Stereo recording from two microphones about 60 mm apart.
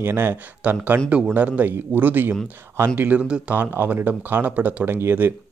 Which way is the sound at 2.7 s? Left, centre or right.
Right.